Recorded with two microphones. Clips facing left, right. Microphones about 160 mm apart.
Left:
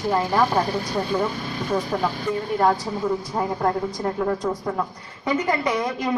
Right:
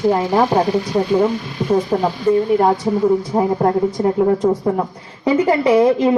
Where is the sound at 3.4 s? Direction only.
25° right (ahead or behind).